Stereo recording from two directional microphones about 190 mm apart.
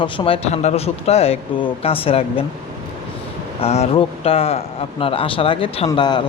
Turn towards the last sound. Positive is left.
turn(degrees=25)  # may be behind; listen again after turning